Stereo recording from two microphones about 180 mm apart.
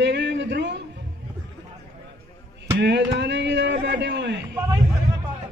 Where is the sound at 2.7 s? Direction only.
70° right (ahead or behind).